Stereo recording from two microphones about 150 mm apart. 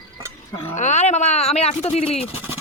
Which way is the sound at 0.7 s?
50° left (ahead or behind).